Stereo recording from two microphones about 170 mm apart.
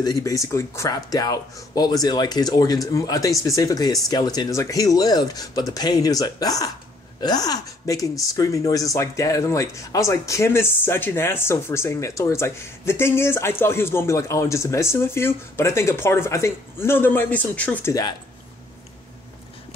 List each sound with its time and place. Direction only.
0.0 s speech: 20° left (ahead or behind)